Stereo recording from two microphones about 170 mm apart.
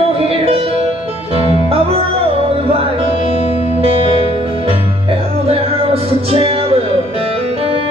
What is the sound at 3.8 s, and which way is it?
Music, 35° right (ahead or behind).